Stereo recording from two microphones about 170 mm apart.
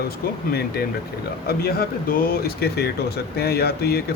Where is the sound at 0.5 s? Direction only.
65° left (ahead or behind).